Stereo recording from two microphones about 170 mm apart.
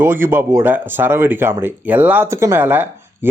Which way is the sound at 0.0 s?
15° right (ahead or behind).